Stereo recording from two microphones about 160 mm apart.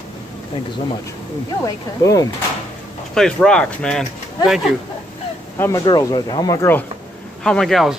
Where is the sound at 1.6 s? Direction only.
20° left (ahead or behind).